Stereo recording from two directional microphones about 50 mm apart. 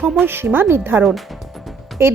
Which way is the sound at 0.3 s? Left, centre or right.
Right.